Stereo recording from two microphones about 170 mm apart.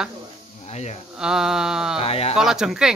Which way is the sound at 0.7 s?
40° left (ahead or behind).